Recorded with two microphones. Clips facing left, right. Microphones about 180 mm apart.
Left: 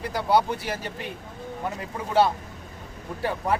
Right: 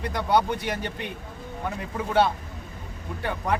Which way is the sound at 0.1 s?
5° left (ahead or behind).